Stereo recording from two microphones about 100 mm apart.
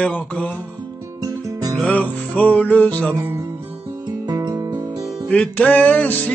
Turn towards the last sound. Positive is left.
turn(degrees=15)  # may be behind; listen again after turning